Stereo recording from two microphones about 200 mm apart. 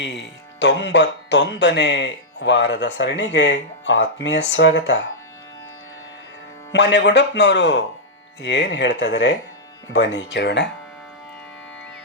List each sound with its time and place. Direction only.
0.0 s speech: 60° left (ahead or behind)
6.7 s speech: 60° left (ahead or behind)